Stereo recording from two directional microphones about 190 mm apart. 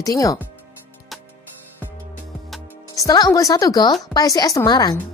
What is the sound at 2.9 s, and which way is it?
Speech, 20° left (ahead or behind).